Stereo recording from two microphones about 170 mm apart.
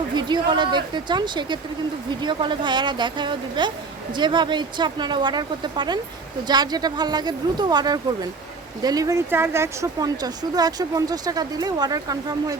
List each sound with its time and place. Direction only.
0.2 s speech: 25° right (ahead or behind)